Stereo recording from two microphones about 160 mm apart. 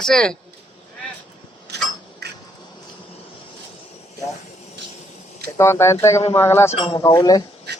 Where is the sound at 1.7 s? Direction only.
90° right.